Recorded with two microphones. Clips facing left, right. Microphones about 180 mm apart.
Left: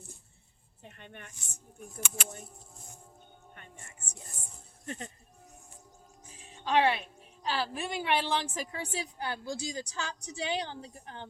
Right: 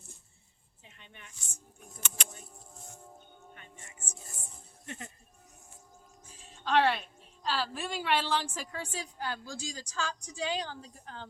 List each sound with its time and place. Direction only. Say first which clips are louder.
0.9 s a sound: left 7 dB; 55° left (ahead or behind)
2.0 s a woman's voice: left 4 dB; 10° left (ahead or behind)
3.5 s music: even; 50° left (ahead or behind)
6.5 s music: even; 10° left (ahead or behind)
7.4 s a woman's voice: left 1 dB; 15° left (ahead or behind)